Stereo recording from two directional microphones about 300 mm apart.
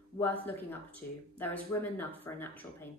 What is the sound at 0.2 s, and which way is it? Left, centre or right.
Speech, centre.